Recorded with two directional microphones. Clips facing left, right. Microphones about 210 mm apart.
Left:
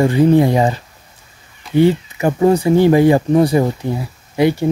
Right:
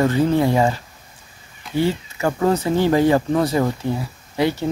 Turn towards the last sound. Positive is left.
turn(degrees=15)  # may be behind; listen again after turning